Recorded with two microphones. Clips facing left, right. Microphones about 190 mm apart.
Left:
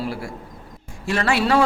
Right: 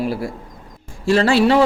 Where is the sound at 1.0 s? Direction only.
30° right (ahead or behind).